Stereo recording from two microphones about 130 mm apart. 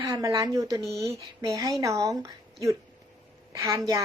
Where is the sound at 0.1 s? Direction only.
25° right (ahead or behind).